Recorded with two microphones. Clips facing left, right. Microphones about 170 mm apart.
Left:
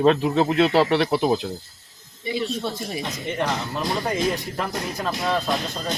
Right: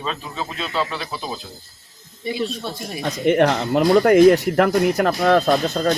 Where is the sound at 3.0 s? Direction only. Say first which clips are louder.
Right 12 dB; 70° right (ahead or behind).